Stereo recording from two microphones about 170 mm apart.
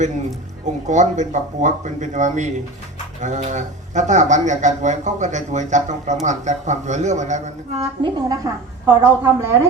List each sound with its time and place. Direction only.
0.6 s speech: 45° right (ahead or behind)
7.8 s a woman's voice: 20° right (ahead or behind)